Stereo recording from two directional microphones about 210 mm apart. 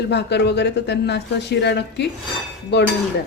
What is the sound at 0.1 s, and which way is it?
Speech, 55° left (ahead or behind).